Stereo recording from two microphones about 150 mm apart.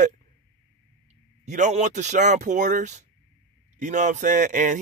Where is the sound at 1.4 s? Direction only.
50° right (ahead or behind).